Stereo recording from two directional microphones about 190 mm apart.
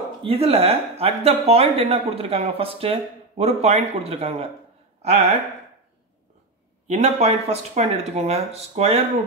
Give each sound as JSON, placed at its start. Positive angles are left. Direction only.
{"t": 0.2, "sound": "speech", "side_deg": -30}
{"t": 6.9, "sound": "speech", "side_deg": -35}